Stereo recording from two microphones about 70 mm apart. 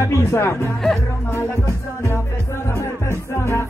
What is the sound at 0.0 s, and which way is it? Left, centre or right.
Speech, left.